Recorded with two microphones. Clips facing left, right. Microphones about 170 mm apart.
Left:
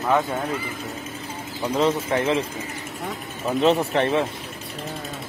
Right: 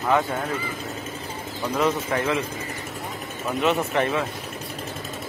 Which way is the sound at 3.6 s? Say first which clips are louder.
Left 3 dB; 35° left (ahead or behind).